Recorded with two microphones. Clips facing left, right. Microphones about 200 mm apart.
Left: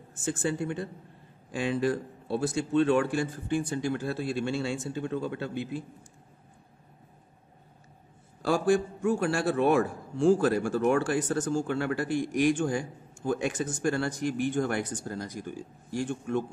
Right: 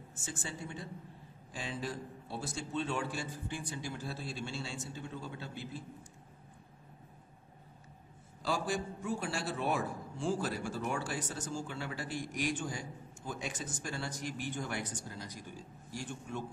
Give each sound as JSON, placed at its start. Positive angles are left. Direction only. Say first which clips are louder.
{"t": 0.1, "sound": "a man's voice", "louder": "left 14 dB", "side_deg": 55}
{"t": 8.4, "sound": "speech", "louder": "left 11 dB", "side_deg": 50}
{"t": 9.7, "sound": "a man's voice", "louder": "left 10 dB", "side_deg": 80}
{"t": 10.2, "sound": "speech", "louder": "left 12 dB", "side_deg": 50}